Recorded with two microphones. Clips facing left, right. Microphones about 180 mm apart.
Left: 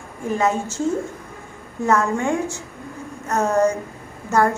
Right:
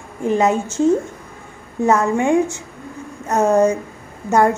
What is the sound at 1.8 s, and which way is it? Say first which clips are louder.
A woman's voice: right 4 dB; 20° right (ahead or behind).